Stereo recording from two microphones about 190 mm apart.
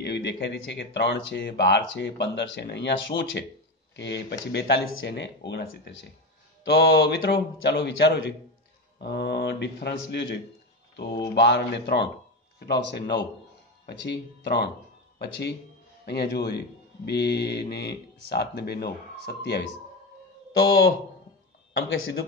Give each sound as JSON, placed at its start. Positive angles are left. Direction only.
{"t": 0.0, "sound": "speech", "side_deg": 65}
{"t": 11.3, "sound": "speech", "side_deg": 65}
{"t": 21.8, "sound": "speech", "side_deg": 90}